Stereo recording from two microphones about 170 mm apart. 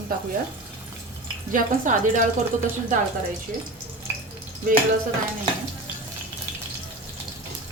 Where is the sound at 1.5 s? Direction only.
50° right (ahead or behind).